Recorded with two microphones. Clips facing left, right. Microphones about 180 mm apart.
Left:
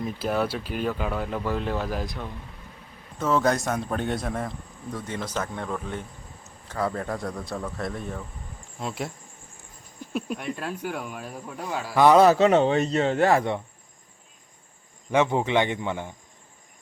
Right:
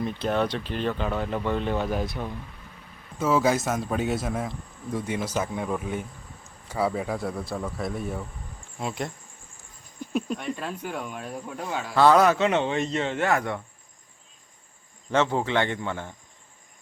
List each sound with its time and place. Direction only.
0.0 s speech: 5° left (ahead or behind)
10.1 s speech: 5° left (ahead or behind)
11.9 s speech: 15° left (ahead or behind)
12.2 s speech: 35° left (ahead or behind)
15.1 s speech: 15° left (ahead or behind)